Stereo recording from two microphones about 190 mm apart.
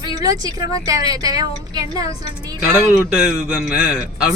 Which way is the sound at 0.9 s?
20° right (ahead or behind).